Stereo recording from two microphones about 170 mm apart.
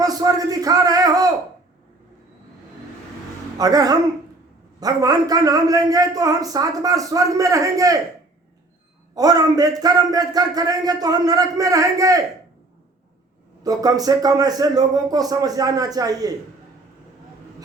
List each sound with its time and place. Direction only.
0.0 s a sound: 20° right (ahead or behind)
3.6 s a man's voice: 20° right (ahead or behind)
9.1 s a man's voice: 20° right (ahead or behind)
13.6 s a man's voice: 20° right (ahead or behind)